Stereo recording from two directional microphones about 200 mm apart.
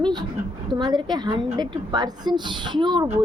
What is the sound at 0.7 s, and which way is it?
A woman's voice, 20° right (ahead or behind).